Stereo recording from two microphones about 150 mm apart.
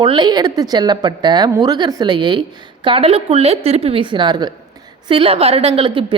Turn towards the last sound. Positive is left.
turn(degrees=-35)  # may be behind; listen again after turning